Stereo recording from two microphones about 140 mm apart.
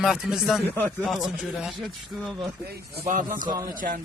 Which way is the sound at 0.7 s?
15° left (ahead or behind).